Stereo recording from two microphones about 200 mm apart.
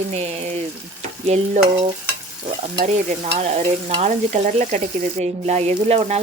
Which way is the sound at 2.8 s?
30° right (ahead or behind).